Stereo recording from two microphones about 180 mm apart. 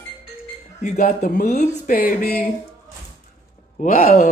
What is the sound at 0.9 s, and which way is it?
Speech, 60° left (ahead or behind).